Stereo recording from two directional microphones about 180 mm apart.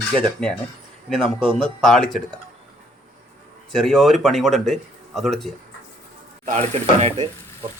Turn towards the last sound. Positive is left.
turn(degrees=-35)  # may be behind; listen again after turning